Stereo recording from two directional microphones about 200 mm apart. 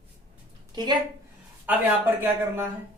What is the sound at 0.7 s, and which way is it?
Speech, 20° right (ahead or behind).